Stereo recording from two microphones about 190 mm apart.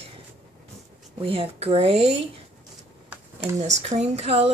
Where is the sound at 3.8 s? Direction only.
35° right (ahead or behind).